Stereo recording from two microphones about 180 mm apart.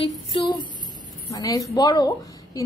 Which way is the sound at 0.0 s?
30° left (ahead or behind).